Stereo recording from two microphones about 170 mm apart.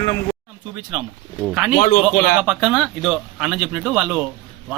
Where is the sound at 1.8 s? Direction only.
50° left (ahead or behind).